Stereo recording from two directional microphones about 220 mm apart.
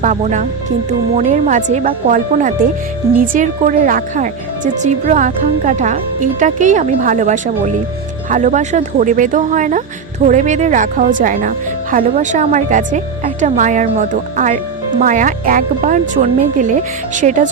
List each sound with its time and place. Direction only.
0.0 s a woman's voice: 35° right (ahead or behind)